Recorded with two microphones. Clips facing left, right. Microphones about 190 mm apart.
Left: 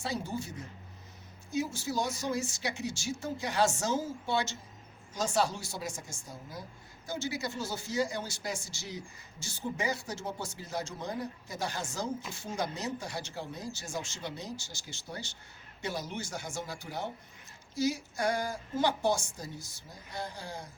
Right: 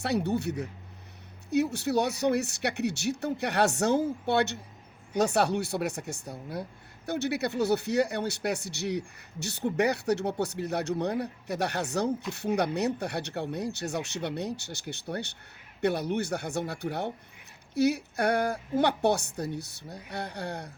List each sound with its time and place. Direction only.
0.0 s speech: 65° right (ahead or behind)